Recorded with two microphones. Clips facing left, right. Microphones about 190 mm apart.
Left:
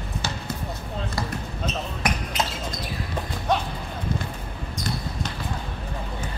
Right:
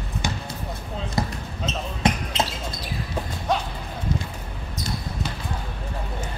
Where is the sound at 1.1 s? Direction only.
25° right (ahead or behind).